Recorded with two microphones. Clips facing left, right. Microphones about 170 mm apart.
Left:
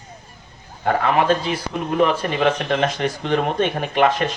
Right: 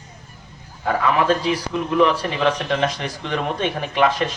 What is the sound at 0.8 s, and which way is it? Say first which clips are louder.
Speech: left 1 dB; 50° left (ahead or behind).